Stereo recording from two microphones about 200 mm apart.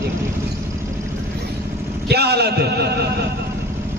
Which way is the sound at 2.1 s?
55° right (ahead or behind).